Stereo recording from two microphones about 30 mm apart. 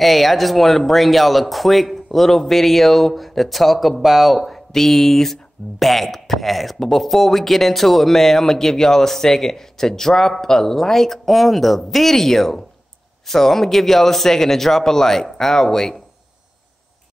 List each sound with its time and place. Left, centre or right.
0.0 s speech: centre
4.0 s speech: centre
4.7 s speech: centre